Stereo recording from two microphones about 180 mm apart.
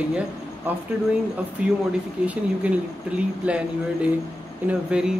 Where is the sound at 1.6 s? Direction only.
5° right (ahead or behind).